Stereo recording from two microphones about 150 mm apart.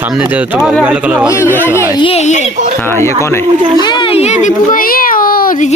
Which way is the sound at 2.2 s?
50° left (ahead or behind).